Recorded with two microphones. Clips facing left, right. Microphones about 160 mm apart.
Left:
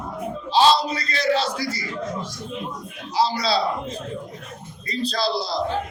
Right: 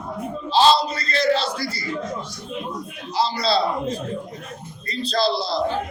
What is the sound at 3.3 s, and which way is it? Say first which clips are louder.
Speech: right 1 dB; 10° left (ahead or behind).